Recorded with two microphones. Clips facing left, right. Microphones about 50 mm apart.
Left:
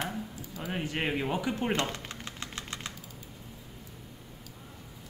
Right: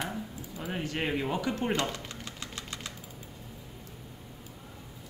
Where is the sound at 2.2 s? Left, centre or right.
Left.